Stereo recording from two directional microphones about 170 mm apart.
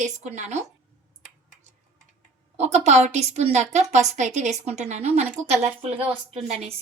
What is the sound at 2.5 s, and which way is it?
A woman's voice, 40° right (ahead or behind).